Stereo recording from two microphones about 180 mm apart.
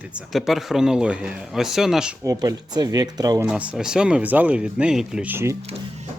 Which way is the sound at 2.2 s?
20° right (ahead or behind).